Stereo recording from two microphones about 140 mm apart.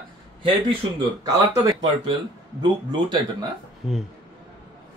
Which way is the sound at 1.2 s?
25° right (ahead or behind).